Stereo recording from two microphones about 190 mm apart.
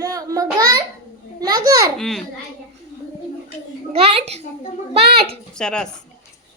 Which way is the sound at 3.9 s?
30° right (ahead or behind).